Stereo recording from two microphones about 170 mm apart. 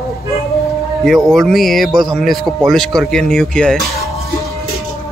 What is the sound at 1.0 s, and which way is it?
Speech, centre (ahead or behind).